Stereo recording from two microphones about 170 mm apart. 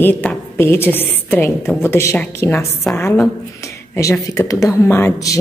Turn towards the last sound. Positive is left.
turn(degrees=15)  # may be behind; listen again after turning